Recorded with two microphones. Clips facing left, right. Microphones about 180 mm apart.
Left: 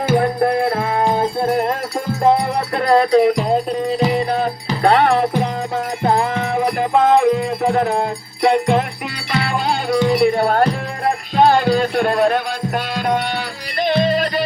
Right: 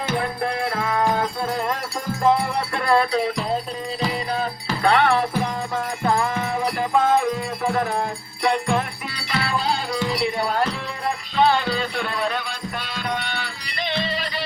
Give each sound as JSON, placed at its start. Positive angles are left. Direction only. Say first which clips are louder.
{"t": 0.2, "sound": "music", "louder": "left 8 dB", "side_deg": 40}
{"t": 1.5, "sound": "music", "louder": "left 7 dB", "side_deg": 50}